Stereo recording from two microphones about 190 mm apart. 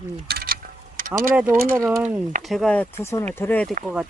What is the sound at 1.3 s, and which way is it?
Speech, 10° right (ahead or behind).